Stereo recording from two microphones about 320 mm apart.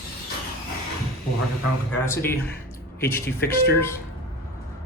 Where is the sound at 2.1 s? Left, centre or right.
Centre.